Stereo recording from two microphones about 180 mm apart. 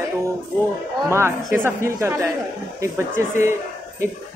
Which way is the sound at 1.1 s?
15° right (ahead or behind).